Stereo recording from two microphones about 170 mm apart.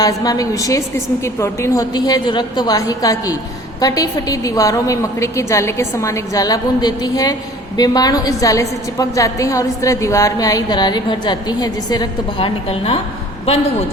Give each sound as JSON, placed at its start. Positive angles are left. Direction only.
{"t": 0.0, "sound": "a woman's voice", "side_deg": 20}